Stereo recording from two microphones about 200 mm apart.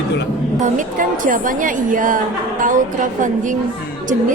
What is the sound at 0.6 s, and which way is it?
A woman's voice, 40° right (ahead or behind).